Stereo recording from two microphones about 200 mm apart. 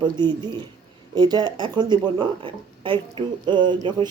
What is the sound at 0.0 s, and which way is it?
Speech, 20° right (ahead or behind).